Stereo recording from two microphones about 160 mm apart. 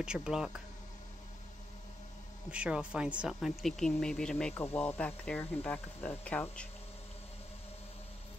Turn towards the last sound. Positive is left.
turn(degrees=10)  # may be behind; listen again after turning